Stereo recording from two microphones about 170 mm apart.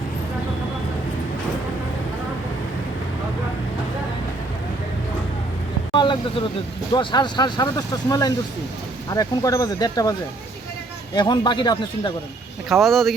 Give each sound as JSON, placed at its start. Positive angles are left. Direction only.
{"t": 5.9, "sound": "vehicle", "side_deg": 30}
{"t": 6.9, "sound": "speech", "side_deg": 25}
{"t": 12.8, "sound": "speech", "side_deg": 0}